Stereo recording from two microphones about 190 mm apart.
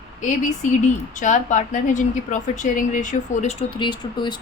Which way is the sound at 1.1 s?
40° left (ahead or behind).